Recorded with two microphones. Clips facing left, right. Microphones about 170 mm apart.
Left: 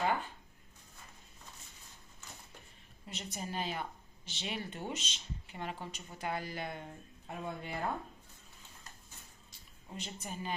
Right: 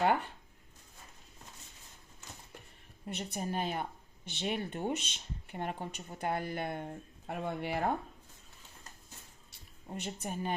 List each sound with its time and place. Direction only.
0.0 s a sound: 65° right (ahead or behind)
3.1 s speech: 60° right (ahead or behind); by 7.9 s 75° right (ahead or behind)
9.9 s speech: 55° right (ahead or behind)